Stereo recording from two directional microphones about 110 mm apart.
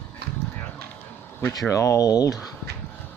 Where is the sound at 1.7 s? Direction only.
30° left (ahead or behind).